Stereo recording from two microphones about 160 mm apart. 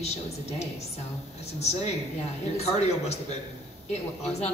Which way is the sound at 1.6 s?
40° left (ahead or behind).